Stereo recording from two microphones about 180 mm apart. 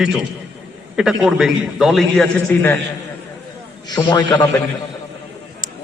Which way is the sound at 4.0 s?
20° left (ahead or behind).